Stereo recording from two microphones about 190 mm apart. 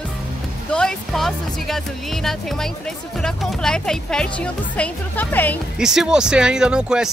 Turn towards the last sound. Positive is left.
turn(degrees=-5)  # may be behind; listen again after turning